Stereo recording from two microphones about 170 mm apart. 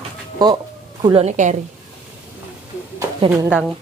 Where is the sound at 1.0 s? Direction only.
35° right (ahead or behind).